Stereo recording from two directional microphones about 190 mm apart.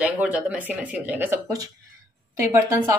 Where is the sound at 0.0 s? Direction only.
5° right (ahead or behind).